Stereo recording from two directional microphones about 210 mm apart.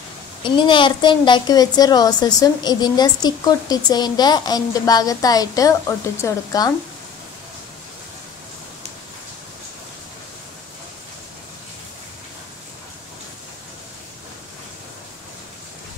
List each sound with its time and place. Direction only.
0.4 s a woman's voice: 25° left (ahead or behind)